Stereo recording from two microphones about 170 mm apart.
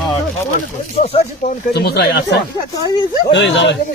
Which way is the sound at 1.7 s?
70° left (ahead or behind).